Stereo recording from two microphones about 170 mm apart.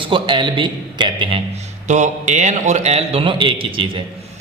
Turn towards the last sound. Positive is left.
turn(degrees=-30)  # may be behind; listen again after turning